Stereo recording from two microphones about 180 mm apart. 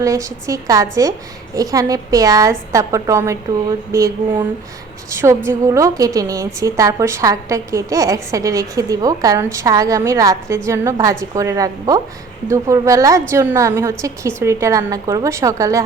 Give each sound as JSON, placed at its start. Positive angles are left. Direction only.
{"t": 0.0, "sound": "a woman's voice", "side_deg": -20}